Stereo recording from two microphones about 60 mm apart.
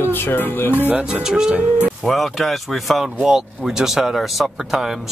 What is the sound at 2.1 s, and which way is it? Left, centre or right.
Speech, centre.